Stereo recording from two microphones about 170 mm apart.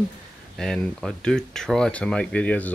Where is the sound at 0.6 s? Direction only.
5° left (ahead or behind).